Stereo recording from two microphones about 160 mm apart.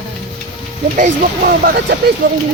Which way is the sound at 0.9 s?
60° right (ahead or behind).